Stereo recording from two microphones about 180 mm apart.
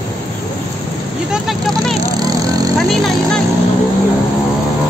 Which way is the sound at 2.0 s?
20° right (ahead or behind).